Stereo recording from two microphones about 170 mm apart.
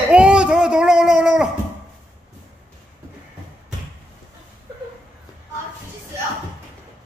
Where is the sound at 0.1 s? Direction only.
5° right (ahead or behind).